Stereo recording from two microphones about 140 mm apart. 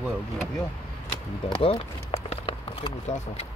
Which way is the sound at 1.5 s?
40° left (ahead or behind).